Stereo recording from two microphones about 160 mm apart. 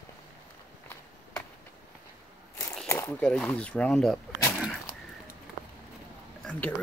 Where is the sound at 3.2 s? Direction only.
5° left (ahead or behind).